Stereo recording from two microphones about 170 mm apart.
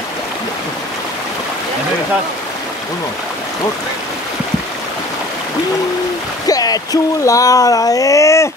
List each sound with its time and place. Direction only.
6.4 s speech: 20° left (ahead or behind)